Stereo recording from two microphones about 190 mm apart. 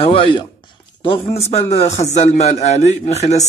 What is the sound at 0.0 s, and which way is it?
A man's voice, 30° left (ahead or behind).